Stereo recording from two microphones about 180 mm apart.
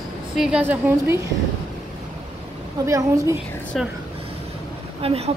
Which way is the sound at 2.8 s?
15° right (ahead or behind).